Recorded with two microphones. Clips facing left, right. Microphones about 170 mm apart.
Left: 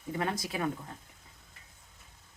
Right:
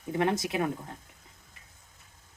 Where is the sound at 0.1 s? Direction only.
25° right (ahead or behind).